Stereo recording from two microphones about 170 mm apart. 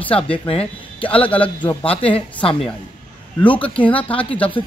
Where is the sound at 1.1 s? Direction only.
30° left (ahead or behind).